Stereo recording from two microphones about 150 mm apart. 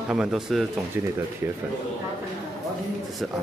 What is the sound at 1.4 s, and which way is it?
Speech, 15° right (ahead or behind).